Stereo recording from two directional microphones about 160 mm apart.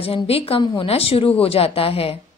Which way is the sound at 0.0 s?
35° left (ahead or behind).